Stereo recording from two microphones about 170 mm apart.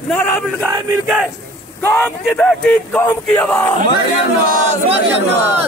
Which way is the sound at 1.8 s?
10° left (ahead or behind).